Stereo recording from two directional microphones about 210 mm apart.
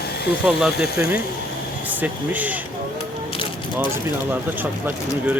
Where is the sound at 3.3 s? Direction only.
25° left (ahead or behind).